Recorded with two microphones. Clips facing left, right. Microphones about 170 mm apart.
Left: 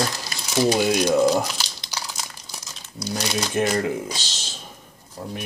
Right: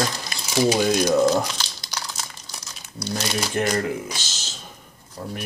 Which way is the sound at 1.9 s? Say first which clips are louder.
Even; 10° left (ahead or behind).